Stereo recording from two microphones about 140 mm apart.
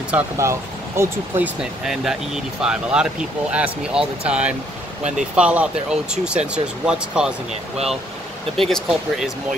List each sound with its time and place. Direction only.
0.1 s speech: 20° right (ahead or behind)
1.6 s speech: 5° right (ahead or behind)
8.5 s speech: 5° left (ahead or behind)